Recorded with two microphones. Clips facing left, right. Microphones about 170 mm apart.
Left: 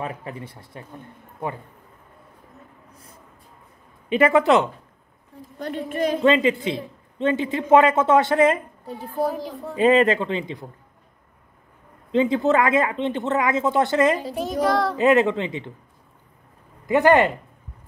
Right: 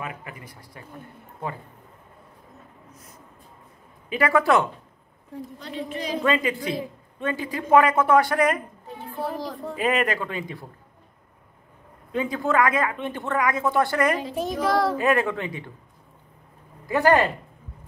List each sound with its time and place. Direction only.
0.0 s a man's voice: 30° left (ahead or behind)
2.9 s a sound: 30° left (ahead or behind)
4.1 s a man's voice: 20° left (ahead or behind)
5.6 s a woman's voice: 50° left (ahead or behind)
6.2 s a man's voice: 25° left (ahead or behind)
8.8 s a woman's voice: 40° left (ahead or behind)
9.8 s a man's voice: 25° left (ahead or behind)
12.1 s a man's voice: 25° left (ahead or behind)
14.3 s a child's voice: centre (ahead or behind)
15.0 s a man's voice: 20° left (ahead or behind)
16.8 s speech: 20° left (ahead or behind)